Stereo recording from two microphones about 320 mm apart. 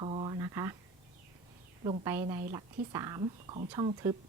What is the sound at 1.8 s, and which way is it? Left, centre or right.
Speech, centre.